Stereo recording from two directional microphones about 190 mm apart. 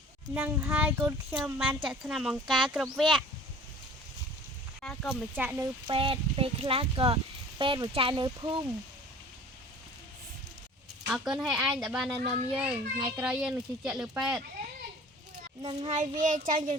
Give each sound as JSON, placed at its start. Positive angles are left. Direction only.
{"t": 0.3, "sound": "child singing", "side_deg": -10}
{"t": 1.5, "sound": "a child's voice", "side_deg": -5}
{"t": 4.8, "sound": "a sound", "side_deg": 5}
{"t": 5.4, "sound": "child singing", "side_deg": -10}
{"t": 5.9, "sound": "speech", "side_deg": -25}
{"t": 11.1, "sound": "a child's voice", "side_deg": 0}
{"t": 15.6, "sound": "speech", "side_deg": -25}
{"t": 16.0, "sound": "a child's voice", "side_deg": -45}